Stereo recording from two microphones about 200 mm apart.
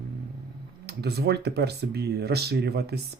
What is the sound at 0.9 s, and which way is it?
Speech, 55° right (ahead or behind).